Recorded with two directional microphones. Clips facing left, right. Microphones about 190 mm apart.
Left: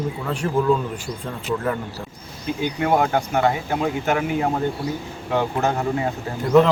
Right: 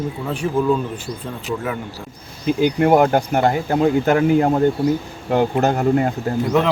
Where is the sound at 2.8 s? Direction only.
50° right (ahead or behind).